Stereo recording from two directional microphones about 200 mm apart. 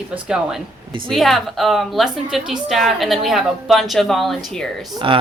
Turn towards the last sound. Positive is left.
turn(degrees=-25)  # may be behind; listen again after turning